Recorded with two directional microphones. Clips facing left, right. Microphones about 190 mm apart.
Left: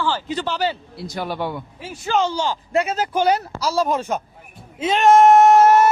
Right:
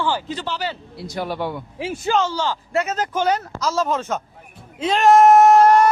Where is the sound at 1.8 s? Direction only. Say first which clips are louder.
Right 8 dB; 90° right.